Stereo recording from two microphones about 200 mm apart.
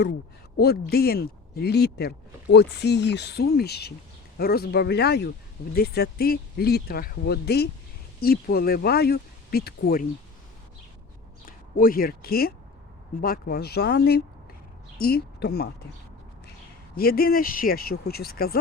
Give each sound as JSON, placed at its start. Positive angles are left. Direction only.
{"t": 0.5, "sound": "speech", "side_deg": 50}
{"t": 11.4, "sound": "speech", "side_deg": 45}
{"t": 16.9, "sound": "speech", "side_deg": 50}